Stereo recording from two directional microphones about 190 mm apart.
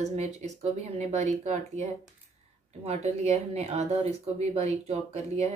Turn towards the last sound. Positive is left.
turn(degrees=-35)  # may be behind; listen again after turning